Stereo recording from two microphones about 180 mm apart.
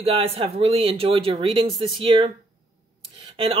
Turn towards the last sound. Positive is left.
turn(degrees=-30)  # may be behind; listen again after turning